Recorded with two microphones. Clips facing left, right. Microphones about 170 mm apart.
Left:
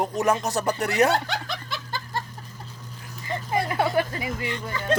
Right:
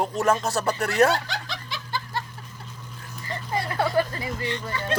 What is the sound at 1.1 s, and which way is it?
Snicker, 55° left (ahead or behind).